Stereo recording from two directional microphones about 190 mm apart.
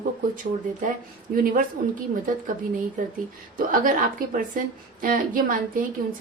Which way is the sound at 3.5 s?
45° right (ahead or behind).